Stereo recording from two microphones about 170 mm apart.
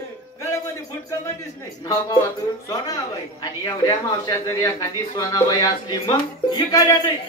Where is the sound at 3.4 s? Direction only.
20° left (ahead or behind).